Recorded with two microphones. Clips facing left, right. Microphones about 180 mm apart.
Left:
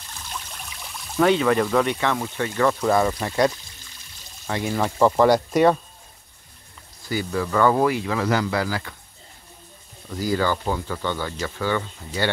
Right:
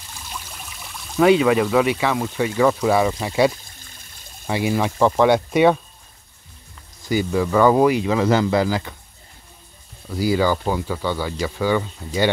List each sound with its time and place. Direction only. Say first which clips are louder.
0.1 s pour: even; 5° right (ahead or behind)
1.2 s speech: right 4 dB; 10° right (ahead or behind)
3.6 s music: right 2 dB; 50° right (ahead or behind)
4.5 s speech: right 3 dB; 10° right (ahead or behind)
7.1 s speech: right 5 dB; 15° right (ahead or behind)
10.0 s speech: right 4 dB; 10° right (ahead or behind)